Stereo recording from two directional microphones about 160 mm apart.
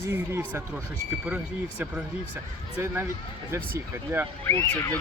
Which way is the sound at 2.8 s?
15° right (ahead or behind).